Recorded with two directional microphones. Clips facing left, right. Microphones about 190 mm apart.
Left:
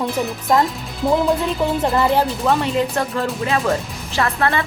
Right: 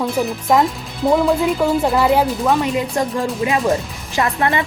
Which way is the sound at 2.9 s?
15° right (ahead or behind).